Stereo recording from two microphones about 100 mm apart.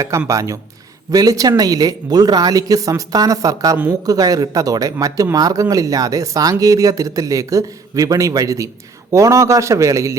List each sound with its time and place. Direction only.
0.3 s speech: 30° right (ahead or behind)